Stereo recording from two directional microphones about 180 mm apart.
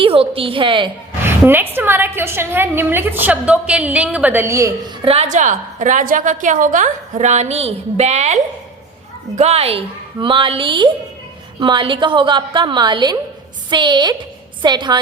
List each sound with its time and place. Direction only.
0.0 s a woman's voice: 30° right (ahead or behind)
1.2 s a woman's voice: 10° right (ahead or behind)
5.0 s a woman's voice: 35° right (ahead or behind)